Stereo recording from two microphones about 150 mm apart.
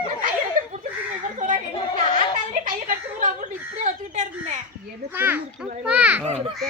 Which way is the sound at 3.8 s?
50° right (ahead or behind).